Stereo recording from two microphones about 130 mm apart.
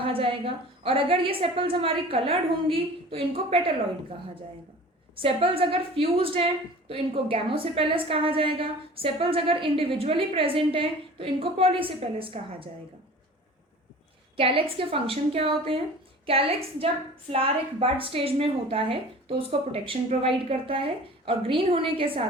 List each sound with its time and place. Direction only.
0.0 s a woman's voice: 45° right (ahead or behind)
5.2 s a woman's voice: 45° right (ahead or behind)
14.3 s a woman's voice: 45° right (ahead or behind)